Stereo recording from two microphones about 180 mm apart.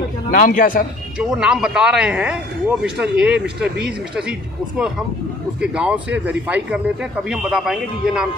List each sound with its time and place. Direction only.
0.3 s a man's voice: 50° left (ahead or behind)
1.1 s a man's voice: 5° right (ahead or behind)